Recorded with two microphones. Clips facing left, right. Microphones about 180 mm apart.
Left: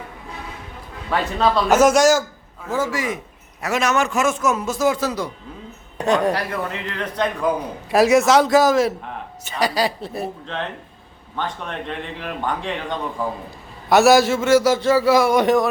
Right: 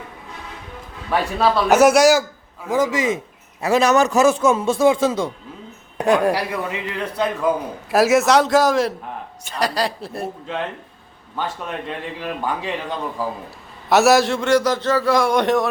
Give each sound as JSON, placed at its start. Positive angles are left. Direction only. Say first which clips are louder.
{"t": 1.1, "sound": "a man's voice", "louder": "right 1 dB", "side_deg": -10}
{"t": 3.6, "sound": "a man's voice", "louder": "right 5 dB", "side_deg": -35}
{"t": 6.0, "sound": "a man's voice", "louder": "right 2 dB", "side_deg": -10}
{"t": 11.3, "sound": "a man's voice", "louder": "right 1 dB", "side_deg": -5}